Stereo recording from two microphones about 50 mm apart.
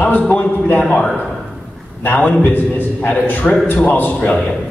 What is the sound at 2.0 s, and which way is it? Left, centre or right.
Speech, left.